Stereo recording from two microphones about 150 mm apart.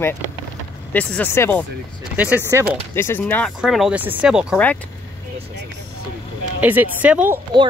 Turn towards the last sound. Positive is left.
turn(degrees=-10)  # may be behind; listen again after turning